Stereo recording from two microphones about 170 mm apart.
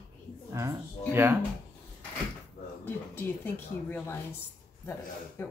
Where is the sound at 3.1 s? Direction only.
10° left (ahead or behind).